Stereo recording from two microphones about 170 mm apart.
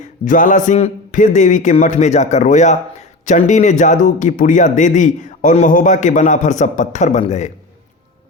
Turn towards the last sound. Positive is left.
turn(degrees=40)  # may be behind; listen again after turning